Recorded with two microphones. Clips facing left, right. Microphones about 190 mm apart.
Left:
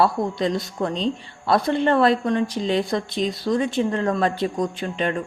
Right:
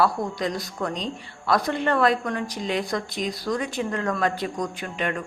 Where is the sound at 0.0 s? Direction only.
25° left (ahead or behind).